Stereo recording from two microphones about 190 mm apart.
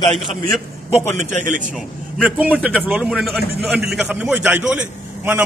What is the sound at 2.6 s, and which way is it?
A man's voice, 5° right (ahead or behind).